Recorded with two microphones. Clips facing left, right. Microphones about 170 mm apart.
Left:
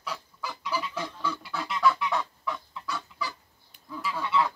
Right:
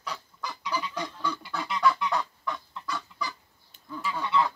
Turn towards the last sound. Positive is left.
turn(degrees=0)  # may be behind; listen again after turning